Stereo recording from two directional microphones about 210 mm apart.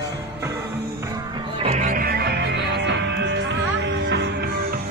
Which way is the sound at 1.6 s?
35° right (ahead or behind).